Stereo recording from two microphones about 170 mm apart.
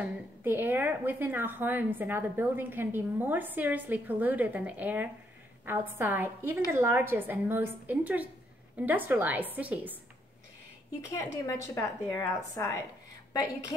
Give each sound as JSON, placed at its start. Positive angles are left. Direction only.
{"t": 0.0, "sound": "a woman's voice", "side_deg": -10}
{"t": 11.1, "sound": "a woman's voice", "side_deg": 20}